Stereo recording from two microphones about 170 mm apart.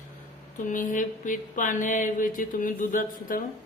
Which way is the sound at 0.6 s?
50° left (ahead or behind).